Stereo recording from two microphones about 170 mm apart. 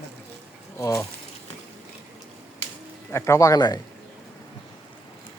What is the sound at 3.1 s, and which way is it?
Speech, 15° left (ahead or behind).